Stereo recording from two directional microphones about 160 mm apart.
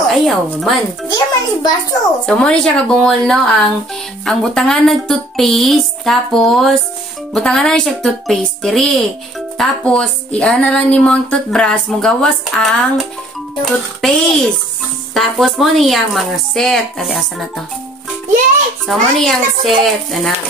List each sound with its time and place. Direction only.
0.1 s speech: centre (ahead or behind)
1.1 s a child's voice: 25° left (ahead or behind)
2.2 s speech: 5° left (ahead or behind)
18.9 s speech: centre (ahead or behind)